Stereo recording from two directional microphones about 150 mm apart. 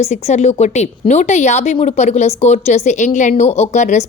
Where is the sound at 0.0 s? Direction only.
45° left (ahead or behind).